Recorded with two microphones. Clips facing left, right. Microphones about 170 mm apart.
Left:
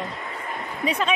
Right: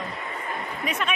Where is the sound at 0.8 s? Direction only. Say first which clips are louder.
Left 5 dB; 30° left (ahead or behind).